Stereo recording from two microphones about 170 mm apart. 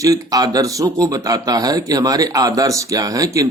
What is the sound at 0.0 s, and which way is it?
Speech, 20° right (ahead or behind).